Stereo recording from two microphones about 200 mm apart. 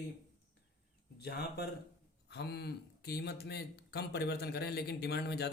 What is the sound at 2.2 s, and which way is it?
Speech, 55° left (ahead or behind).